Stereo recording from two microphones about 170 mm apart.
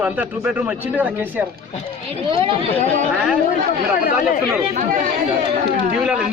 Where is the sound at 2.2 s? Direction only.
30° right (ahead or behind).